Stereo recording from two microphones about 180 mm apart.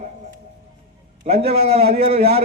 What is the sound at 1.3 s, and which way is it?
Speech, 35° right (ahead or behind).